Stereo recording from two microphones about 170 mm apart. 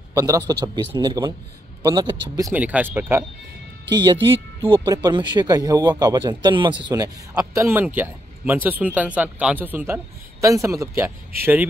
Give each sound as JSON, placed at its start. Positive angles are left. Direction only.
{"t": 0.1, "sound": "a man's voice", "side_deg": -20}
{"t": 2.5, "sound": "speech", "side_deg": -10}
{"t": 3.9, "sound": "speech", "side_deg": -25}